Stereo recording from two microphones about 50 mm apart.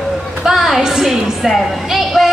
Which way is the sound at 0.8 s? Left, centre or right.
Centre.